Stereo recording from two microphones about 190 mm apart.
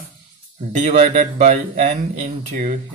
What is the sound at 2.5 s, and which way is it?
Speech, 50° right (ahead or behind).